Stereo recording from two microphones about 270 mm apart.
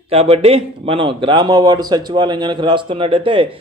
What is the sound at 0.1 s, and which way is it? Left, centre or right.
A man's voice, right.